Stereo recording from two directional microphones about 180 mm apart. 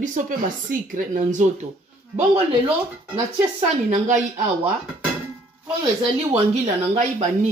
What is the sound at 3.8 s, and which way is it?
Speech, 45° right (ahead or behind).